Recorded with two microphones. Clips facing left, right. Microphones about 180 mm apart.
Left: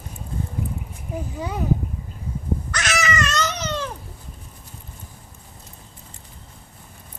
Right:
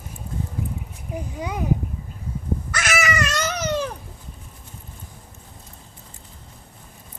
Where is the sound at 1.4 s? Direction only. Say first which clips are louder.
Even; 15° right (ahead or behind).